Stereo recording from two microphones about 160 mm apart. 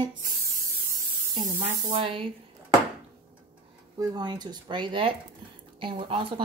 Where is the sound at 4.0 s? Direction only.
25° right (ahead or behind).